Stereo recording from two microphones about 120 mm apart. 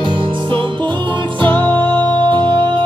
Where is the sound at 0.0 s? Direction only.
45° right (ahead or behind).